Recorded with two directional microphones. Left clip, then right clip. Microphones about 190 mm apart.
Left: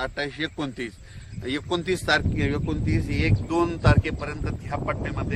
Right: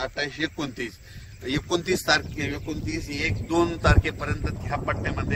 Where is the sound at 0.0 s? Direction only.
55° right (ahead or behind).